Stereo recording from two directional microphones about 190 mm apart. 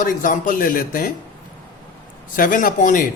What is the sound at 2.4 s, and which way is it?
Speech, 45° left (ahead or behind).